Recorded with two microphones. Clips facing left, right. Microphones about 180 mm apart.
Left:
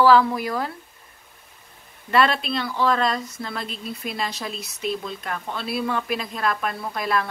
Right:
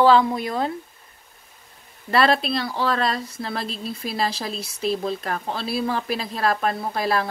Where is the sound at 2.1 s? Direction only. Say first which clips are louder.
Right 1 dB; 35° right (ahead or behind).